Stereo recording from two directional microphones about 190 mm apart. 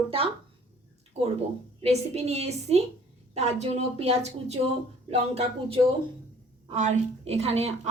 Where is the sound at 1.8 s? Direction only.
35° right (ahead or behind).